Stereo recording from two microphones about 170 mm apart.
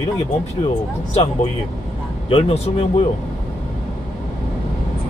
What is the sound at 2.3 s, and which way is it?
Speech, 30° left (ahead or behind).